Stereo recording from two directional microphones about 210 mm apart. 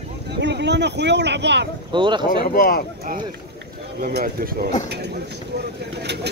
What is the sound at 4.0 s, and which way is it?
Speech, 45° right (ahead or behind).